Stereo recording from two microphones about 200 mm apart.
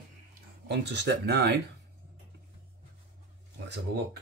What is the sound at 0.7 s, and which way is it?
Speech, 55° right (ahead or behind).